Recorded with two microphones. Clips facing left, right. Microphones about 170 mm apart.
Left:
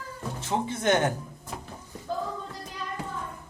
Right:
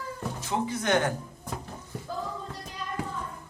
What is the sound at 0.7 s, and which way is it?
Speech, 25° left (ahead or behind).